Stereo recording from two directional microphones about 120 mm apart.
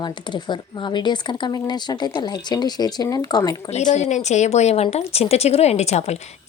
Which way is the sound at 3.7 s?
70° left (ahead or behind).